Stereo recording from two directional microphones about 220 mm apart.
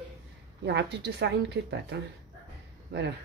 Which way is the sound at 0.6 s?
50° right (ahead or behind).